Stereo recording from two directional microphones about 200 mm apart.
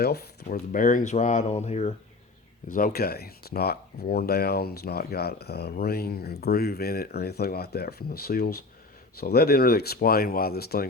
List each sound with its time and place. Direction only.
0.0 s speech: 50° left (ahead or behind); by 1.9 s 35° left (ahead or behind)
2.7 s speech: 50° left (ahead or behind)